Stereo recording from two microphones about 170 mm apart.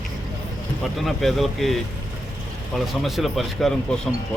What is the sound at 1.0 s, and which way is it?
Speech, centre (ahead or behind).